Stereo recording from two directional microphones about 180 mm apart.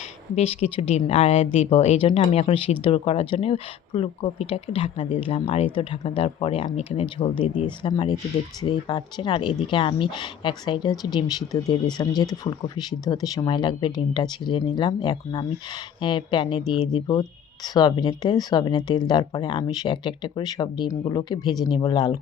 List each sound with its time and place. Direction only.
0.3 s speech: 35° left (ahead or behind)